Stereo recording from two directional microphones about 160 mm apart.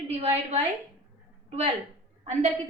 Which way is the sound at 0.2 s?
40° right (ahead or behind).